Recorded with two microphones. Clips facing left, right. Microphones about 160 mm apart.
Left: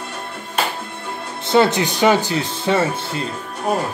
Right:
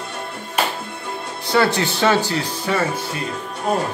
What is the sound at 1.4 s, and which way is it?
Speech, 20° left (ahead or behind).